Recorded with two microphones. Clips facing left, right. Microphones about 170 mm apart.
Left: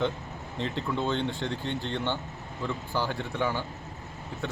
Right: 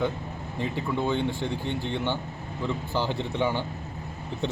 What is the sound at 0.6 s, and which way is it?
A man's voice, 10° right (ahead or behind).